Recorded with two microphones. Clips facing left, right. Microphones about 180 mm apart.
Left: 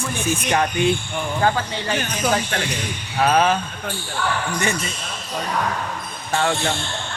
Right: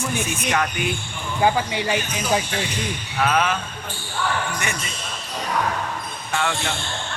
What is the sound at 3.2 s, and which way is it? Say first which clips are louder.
Speech: left 4 dB; 35° left (ahead or behind).